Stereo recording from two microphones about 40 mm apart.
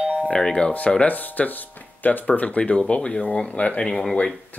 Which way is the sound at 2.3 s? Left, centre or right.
Left.